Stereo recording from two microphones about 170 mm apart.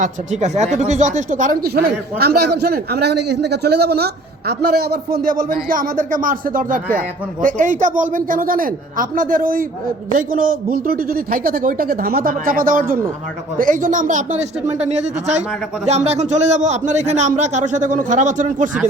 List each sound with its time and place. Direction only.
0.0 s a man's voice: 40° right (ahead or behind)